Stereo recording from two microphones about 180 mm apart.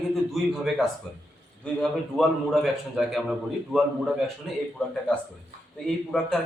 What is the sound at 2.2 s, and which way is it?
A man's voice, centre (ahead or behind).